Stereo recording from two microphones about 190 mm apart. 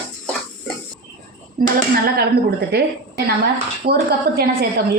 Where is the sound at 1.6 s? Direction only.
45° right (ahead or behind).